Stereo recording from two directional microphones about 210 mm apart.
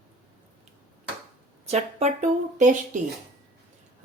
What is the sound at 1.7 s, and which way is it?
A woman's voice, 30° right (ahead or behind).